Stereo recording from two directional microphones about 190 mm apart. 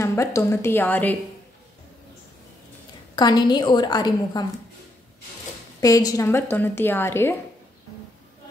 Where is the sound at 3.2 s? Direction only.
20° left (ahead or behind).